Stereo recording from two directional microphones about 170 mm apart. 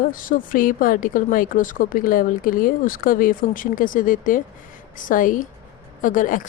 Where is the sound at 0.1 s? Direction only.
55° left (ahead or behind).